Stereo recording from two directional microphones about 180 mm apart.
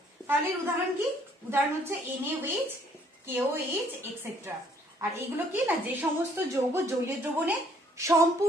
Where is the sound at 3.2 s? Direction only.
10° right (ahead or behind).